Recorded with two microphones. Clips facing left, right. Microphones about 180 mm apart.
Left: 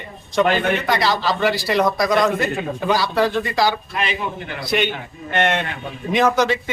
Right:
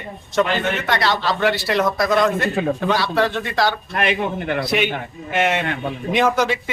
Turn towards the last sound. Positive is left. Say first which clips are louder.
# left 1 dB
turn(degrees=-5)  # may be behind; listen again after turning